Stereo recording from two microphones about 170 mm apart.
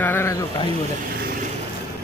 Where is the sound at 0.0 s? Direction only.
15° left (ahead or behind).